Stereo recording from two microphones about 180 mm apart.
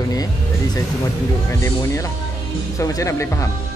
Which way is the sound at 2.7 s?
20° left (ahead or behind).